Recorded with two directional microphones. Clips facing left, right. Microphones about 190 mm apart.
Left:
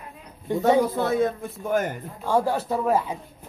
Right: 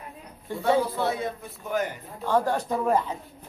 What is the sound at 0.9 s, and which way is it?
A man's voice, 45° left (ahead or behind).